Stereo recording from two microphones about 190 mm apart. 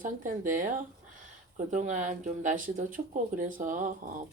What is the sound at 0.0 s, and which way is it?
A woman's voice, 45° right (ahead or behind).